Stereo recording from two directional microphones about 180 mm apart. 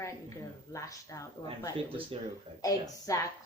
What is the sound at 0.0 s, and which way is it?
A woman's voice, 15° left (ahead or behind).